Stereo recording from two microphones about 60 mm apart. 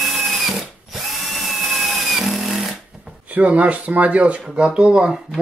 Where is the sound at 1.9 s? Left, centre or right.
Centre.